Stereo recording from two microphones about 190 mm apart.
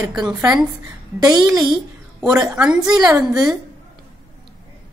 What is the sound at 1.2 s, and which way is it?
Speech, 20° right (ahead or behind).